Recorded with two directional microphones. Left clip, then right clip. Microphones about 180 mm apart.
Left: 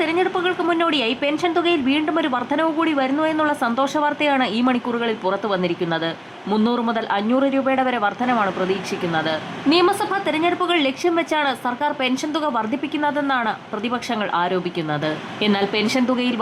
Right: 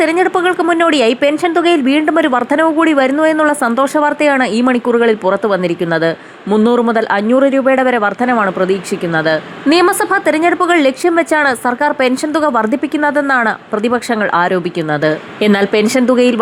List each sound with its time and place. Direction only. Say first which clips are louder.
0.0 s speech: right 8 dB; 30° right (ahead or behind)